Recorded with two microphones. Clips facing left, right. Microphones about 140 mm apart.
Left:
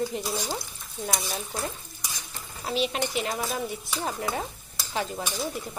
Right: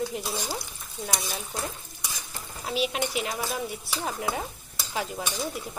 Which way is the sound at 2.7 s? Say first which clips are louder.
Left 1 dB; 5° right (ahead or behind).